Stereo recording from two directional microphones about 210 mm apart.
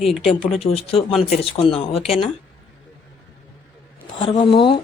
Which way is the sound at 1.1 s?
Centre (ahead or behind).